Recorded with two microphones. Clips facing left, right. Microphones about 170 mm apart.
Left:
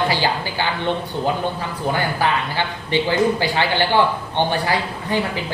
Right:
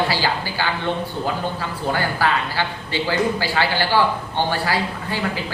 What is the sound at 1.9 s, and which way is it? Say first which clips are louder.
A man's voice: even; 20° left (ahead or behind).